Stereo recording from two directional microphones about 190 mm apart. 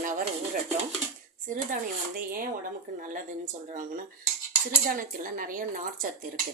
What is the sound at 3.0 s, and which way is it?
Speech, 45° right (ahead or behind).